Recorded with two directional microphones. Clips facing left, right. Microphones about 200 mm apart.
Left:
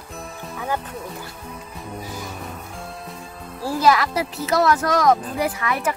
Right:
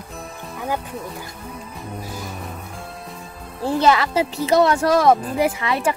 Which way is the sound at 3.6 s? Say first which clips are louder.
Right 1 dB; 25° right (ahead or behind).